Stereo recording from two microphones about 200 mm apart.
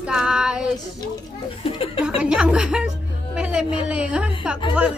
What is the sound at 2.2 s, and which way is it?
Chuckle, 5° right (ahead or behind).